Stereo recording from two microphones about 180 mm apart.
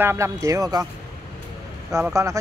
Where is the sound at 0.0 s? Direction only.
15° right (ahead or behind).